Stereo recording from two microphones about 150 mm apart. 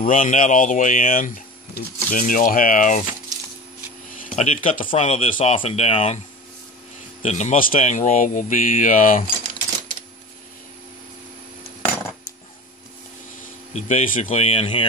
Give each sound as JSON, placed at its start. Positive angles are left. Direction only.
{"t": 0.0, "sound": "speech", "side_deg": 60}
{"t": 4.3, "sound": "a sound", "side_deg": 45}
{"t": 4.6, "sound": "speech", "side_deg": 60}
{"t": 4.8, "sound": "speech", "side_deg": 45}
{"t": 7.2, "sound": "speech", "side_deg": 50}
{"t": 13.7, "sound": "speech", "side_deg": 50}
{"t": 14.4, "sound": "speech", "side_deg": 40}